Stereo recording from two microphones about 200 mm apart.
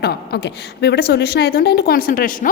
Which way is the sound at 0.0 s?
55° left (ahead or behind).